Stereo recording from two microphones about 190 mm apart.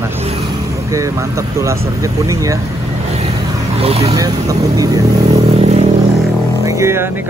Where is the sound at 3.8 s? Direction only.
30° right (ahead or behind).